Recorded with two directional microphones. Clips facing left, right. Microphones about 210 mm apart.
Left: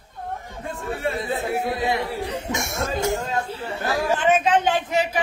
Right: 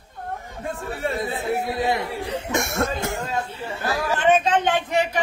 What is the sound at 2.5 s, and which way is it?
Speech, 60° right (ahead or behind).